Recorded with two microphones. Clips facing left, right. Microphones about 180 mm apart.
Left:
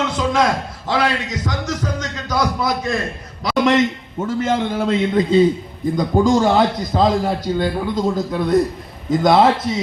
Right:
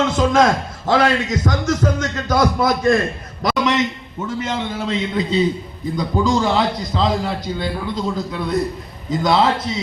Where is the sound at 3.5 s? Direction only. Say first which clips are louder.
Left 5 dB; 50° left (ahead or behind).